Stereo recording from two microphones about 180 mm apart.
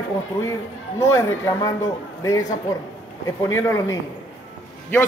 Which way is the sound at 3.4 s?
15° left (ahead or behind).